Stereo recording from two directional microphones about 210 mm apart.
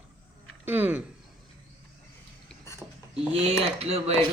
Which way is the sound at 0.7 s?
10° right (ahead or behind).